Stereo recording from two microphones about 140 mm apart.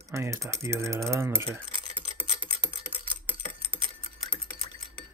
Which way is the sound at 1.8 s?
40° right (ahead or behind).